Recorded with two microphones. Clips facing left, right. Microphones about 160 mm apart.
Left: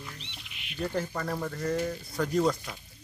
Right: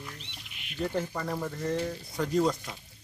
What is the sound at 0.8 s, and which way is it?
Speech, 5° right (ahead or behind).